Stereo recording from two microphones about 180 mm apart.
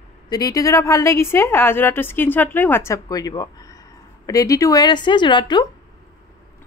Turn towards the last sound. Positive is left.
turn(degrees=25)  # may be behind; listen again after turning